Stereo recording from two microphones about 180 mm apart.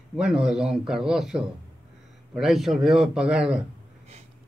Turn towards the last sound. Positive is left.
turn(degrees=-5)  # may be behind; listen again after turning